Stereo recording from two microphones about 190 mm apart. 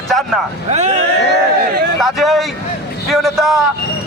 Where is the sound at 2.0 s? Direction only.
Centre (ahead or behind).